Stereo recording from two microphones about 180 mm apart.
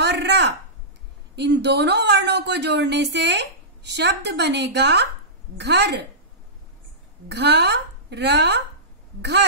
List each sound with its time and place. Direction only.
0.0 s a sound: 75° right (ahead or behind)
1.3 s a woman's voice: 70° right (ahead or behind)
7.2 s a woman's voice: 70° right (ahead or behind)